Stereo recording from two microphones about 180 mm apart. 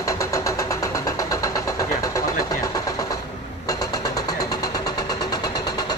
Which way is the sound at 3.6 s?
20° left (ahead or behind).